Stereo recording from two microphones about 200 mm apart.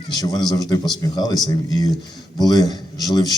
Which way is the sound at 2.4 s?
20° left (ahead or behind).